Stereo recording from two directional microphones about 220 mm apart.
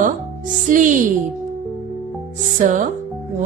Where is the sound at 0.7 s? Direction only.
35° right (ahead or behind).